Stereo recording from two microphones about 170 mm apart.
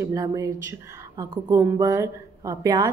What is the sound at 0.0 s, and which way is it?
Speech, 20° right (ahead or behind).